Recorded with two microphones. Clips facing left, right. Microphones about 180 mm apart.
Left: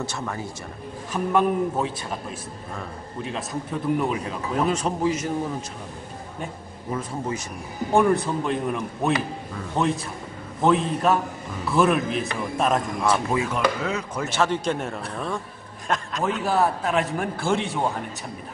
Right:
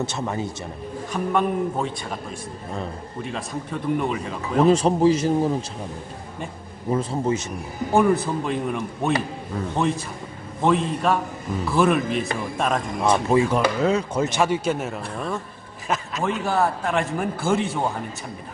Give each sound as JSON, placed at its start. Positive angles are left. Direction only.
{"t": 0.0, "sound": "speech", "side_deg": -20}
{"t": 1.1, "sound": "a man's voice", "side_deg": 5}
{"t": 4.0, "sound": "a man's voice", "side_deg": 5}
{"t": 4.6, "sound": "speech", "side_deg": -30}
{"t": 6.9, "sound": "speech", "side_deg": -30}
{"t": 7.9, "sound": "a man's voice", "side_deg": 0}
{"t": 13.0, "sound": "speech", "side_deg": -25}
{"t": 14.2, "sound": "a man's voice", "side_deg": -15}